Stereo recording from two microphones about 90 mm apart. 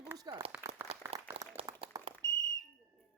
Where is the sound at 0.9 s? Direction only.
90° right.